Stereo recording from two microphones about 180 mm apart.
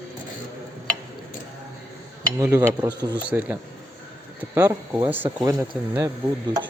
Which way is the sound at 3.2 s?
10° right (ahead or behind).